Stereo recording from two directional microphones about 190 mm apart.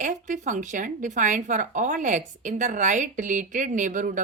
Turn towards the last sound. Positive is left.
turn(degrees=-45)  # may be behind; listen again after turning